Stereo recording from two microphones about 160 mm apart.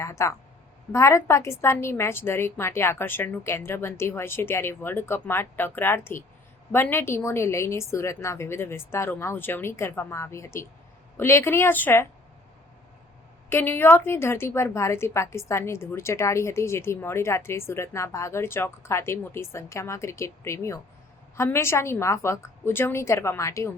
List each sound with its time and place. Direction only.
0.0 s a woman's voice: 20° left (ahead or behind)
13.5 s a woman's voice: 15° left (ahead or behind)